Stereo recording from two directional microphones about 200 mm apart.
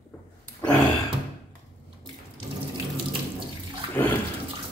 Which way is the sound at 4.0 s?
10° left (ahead or behind).